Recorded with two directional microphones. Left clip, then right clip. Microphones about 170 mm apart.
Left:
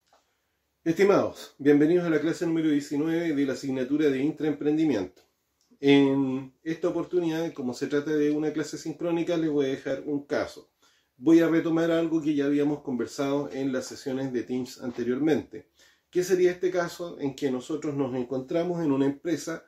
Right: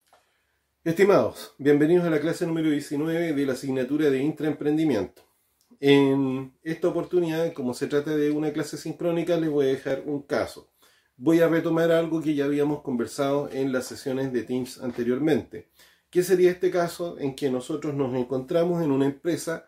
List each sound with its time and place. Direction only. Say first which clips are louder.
0.8 s speech: right 2 dB; 20° right (ahead or behind)